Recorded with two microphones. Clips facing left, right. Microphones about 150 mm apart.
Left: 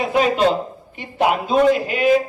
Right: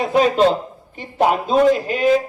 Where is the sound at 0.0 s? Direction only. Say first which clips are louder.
Right 2 dB; 35° right (ahead or behind).